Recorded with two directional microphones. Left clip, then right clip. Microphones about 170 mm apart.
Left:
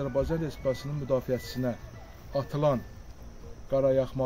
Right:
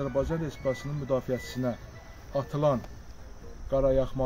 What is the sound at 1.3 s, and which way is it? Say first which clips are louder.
Speech: left 1 dB; 50° left (ahead or behind).